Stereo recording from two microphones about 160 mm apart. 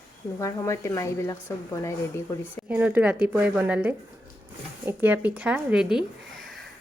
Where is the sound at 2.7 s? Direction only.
10° right (ahead or behind).